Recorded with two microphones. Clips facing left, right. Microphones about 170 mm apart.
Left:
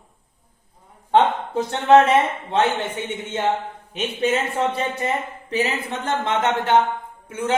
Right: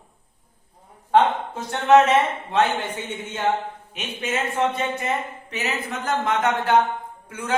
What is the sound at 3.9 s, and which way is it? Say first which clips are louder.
A man's voice: left 6 dB; 30° left (ahead or behind).